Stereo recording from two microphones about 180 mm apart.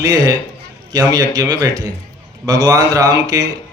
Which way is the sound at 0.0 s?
20° right (ahead or behind).